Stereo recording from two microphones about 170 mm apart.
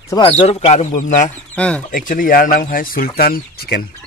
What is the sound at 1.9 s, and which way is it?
Speech, 55° left (ahead or behind).